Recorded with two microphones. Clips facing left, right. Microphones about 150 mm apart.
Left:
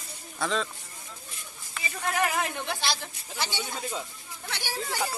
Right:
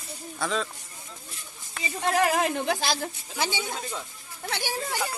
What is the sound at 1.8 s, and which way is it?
Speech, 30° right (ahead or behind).